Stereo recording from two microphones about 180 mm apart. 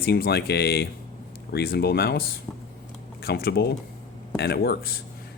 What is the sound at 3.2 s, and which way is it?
Speech, 60° left (ahead or behind).